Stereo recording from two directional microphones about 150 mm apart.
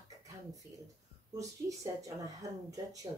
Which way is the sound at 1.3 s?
20° right (ahead or behind).